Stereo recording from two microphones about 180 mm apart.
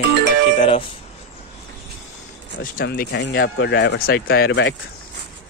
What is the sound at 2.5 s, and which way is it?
Speech, 50° left (ahead or behind).